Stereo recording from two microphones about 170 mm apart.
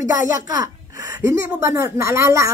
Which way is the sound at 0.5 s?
20° right (ahead or behind).